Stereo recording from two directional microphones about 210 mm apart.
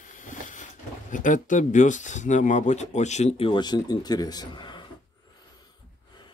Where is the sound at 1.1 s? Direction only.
40° left (ahead or behind); by 4.9 s 20° left (ahead or behind).